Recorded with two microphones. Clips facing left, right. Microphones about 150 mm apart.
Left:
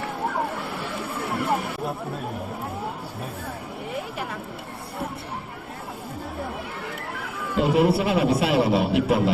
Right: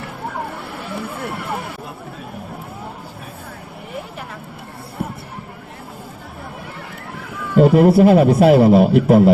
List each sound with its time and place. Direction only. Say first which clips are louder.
7.5 s a man's voice: right 8 dB; 50° right (ahead or behind)